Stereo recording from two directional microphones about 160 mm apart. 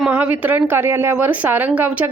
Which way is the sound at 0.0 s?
10° right (ahead or behind).